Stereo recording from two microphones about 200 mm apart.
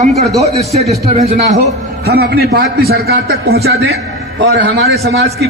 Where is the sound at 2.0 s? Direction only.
50° right (ahead or behind).